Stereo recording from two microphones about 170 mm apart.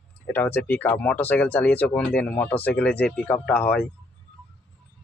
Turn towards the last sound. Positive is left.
turn(degrees=10)  # may be behind; listen again after turning